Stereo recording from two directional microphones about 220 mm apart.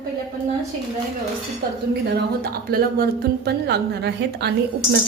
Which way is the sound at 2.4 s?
45° right (ahead or behind).